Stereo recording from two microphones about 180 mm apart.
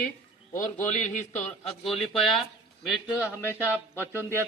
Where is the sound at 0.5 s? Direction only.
45° left (ahead or behind).